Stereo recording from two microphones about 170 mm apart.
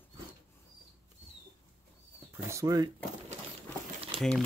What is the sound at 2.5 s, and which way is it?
Speech, 20° right (ahead or behind).